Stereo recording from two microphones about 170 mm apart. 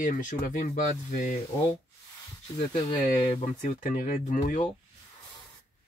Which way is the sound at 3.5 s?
50° left (ahead or behind).